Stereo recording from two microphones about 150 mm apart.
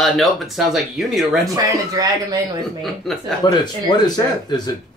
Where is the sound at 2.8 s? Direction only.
Centre (ahead or behind).